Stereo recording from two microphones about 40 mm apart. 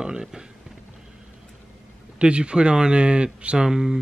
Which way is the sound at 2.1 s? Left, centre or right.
Right.